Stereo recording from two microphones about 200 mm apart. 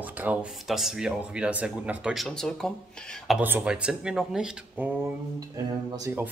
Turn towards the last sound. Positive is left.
turn(degrees=-15)  # may be behind; listen again after turning